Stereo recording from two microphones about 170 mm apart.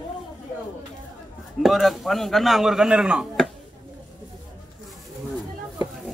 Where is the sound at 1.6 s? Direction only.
Centre (ahead or behind).